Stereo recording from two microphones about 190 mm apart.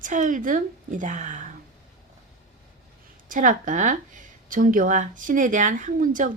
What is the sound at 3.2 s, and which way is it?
A woman's voice, 45° right (ahead or behind).